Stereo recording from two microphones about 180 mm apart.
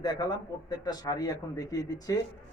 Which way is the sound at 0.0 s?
25° left (ahead or behind).